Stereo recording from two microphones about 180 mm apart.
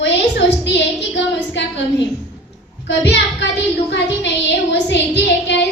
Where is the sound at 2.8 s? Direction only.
75° left (ahead or behind).